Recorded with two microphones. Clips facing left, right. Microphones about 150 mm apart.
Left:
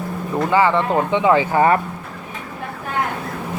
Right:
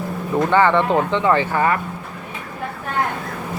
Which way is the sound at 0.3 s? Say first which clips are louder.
Right 1 dB; 5° left (ahead or behind).